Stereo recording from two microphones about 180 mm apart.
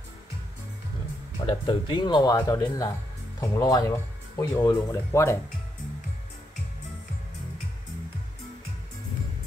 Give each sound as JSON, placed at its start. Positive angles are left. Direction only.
{"t": 1.4, "sound": "speech", "side_deg": 30}